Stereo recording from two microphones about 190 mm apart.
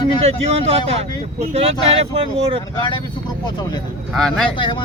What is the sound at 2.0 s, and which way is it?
Speech, 30° right (ahead or behind).